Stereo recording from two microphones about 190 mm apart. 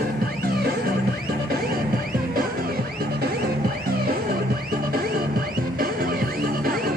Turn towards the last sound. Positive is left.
turn(degrees=-50)  # may be behind; listen again after turning